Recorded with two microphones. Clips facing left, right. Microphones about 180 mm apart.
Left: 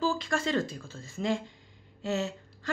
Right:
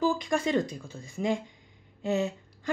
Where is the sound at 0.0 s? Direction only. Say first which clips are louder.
Right 3 dB; 15° right (ahead or behind).